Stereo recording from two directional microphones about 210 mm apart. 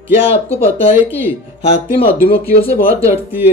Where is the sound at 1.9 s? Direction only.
25° left (ahead or behind).